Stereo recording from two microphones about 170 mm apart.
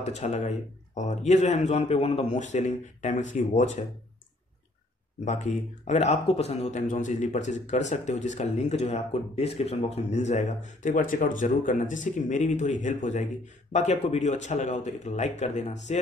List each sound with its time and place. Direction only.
0.0 s speech: 40° left (ahead or behind)
5.2 s speech: 45° left (ahead or behind)